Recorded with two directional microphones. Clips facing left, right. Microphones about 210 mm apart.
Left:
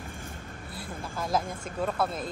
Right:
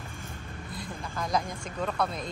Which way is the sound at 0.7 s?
5° left (ahead or behind).